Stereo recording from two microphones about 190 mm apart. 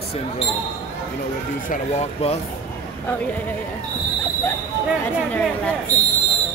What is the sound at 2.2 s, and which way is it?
Speech, 35° left (ahead or behind).